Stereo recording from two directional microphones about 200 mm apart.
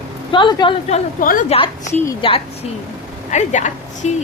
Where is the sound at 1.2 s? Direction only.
45° left (ahead or behind).